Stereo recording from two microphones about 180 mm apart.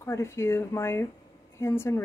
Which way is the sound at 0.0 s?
15° left (ahead or behind).